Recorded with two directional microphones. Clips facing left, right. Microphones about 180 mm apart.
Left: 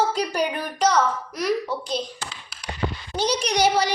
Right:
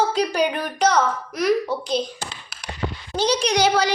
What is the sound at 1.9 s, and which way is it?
Speech, 30° right (ahead or behind).